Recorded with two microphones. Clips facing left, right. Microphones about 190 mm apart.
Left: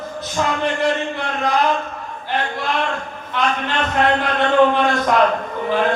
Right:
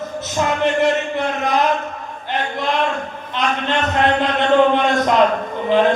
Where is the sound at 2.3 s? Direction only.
20° right (ahead or behind).